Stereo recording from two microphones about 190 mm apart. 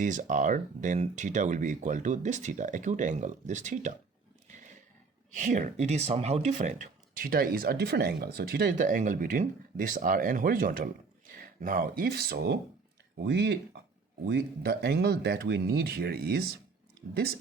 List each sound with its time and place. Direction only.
0.0 s speech: 45° right (ahead or behind)
5.3 s speech: 40° right (ahead or behind)